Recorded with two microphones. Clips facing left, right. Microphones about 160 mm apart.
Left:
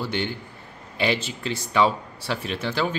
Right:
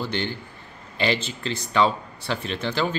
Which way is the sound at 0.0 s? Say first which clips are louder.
Even; 10° left (ahead or behind).